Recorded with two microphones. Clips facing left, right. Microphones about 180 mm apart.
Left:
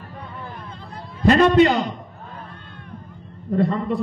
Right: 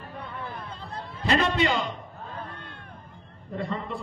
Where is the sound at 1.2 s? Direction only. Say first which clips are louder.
Left 10 dB; 45° left (ahead or behind).